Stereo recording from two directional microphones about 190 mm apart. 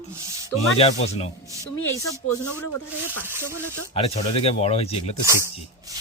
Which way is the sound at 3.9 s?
30° left (ahead or behind).